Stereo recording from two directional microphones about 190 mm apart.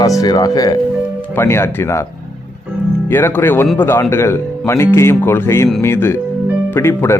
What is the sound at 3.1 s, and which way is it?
Speech, 10° left (ahead or behind).